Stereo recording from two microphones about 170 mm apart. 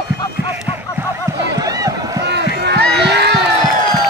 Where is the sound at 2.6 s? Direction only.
75° right (ahead or behind).